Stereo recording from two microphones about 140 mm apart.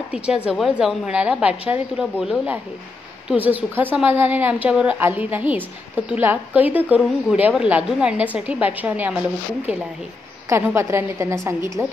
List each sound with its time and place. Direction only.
0.1 s a woman's voice: 5° right (ahead or behind)
10.5 s a woman's voice: 20° right (ahead or behind)